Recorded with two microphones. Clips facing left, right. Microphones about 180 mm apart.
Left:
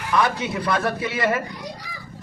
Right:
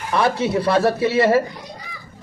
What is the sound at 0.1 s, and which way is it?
A man's voice, 30° right (ahead or behind).